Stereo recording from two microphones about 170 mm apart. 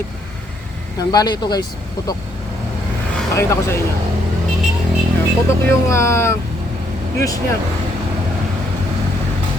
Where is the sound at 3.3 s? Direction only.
15° left (ahead or behind).